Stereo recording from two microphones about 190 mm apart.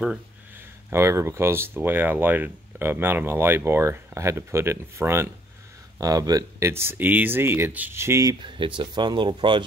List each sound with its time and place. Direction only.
0.8 s speech: 15° right (ahead or behind)